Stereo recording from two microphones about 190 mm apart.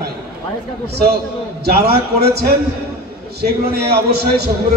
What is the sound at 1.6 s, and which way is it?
A man's voice, 55° right (ahead or behind).